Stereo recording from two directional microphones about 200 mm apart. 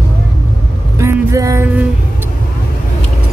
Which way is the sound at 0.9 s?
15° right (ahead or behind).